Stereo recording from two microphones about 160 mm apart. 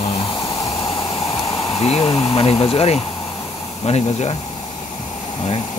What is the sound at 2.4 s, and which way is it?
Speech, 40° left (ahead or behind).